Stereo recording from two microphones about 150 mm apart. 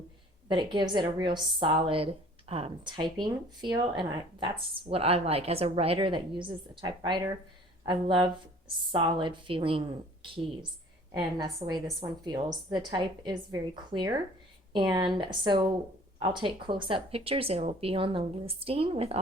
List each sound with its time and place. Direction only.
0.4 s a woman's voice: 30° right (ahead or behind)